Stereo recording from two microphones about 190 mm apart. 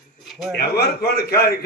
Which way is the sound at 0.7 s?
55° left (ahead or behind).